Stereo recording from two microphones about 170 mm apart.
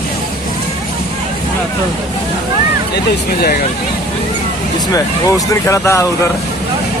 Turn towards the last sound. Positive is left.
turn(degrees=15)  # may be behind; listen again after turning